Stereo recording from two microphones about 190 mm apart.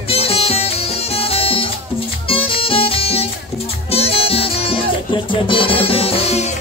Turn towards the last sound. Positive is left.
turn(degrees=35)  # may be behind; listen again after turning